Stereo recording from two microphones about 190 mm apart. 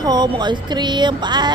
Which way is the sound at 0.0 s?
20° right (ahead or behind).